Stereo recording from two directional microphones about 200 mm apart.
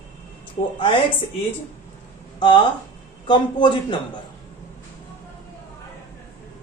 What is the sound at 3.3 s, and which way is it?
Speech, 25° left (ahead or behind).